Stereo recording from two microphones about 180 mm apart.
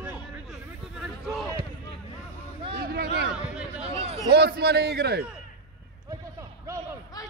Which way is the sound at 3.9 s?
35° right (ahead or behind).